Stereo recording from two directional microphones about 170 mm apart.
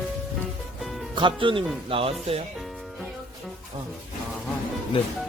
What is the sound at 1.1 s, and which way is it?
Speech, 30° right (ahead or behind).